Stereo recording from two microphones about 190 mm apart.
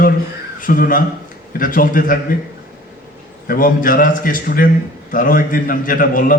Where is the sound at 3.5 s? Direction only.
45° left (ahead or behind).